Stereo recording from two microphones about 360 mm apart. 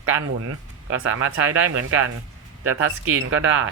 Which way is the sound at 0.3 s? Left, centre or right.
Right.